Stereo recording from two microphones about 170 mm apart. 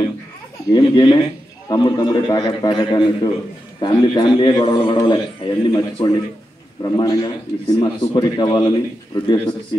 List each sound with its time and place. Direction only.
0.7 s a man's voice: 25° left (ahead or behind)